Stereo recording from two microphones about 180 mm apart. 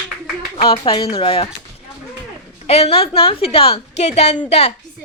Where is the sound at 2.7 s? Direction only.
35° left (ahead or behind).